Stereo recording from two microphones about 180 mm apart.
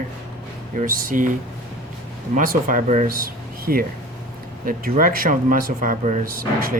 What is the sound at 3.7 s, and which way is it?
Speech, 55° right (ahead or behind).